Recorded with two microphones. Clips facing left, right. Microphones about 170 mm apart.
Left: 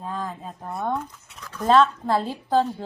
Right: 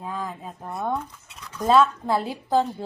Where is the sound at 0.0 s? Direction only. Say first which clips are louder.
Left 1 dB; 10° right (ahead or behind).